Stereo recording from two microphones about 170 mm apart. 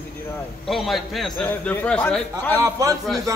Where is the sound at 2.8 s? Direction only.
20° right (ahead or behind).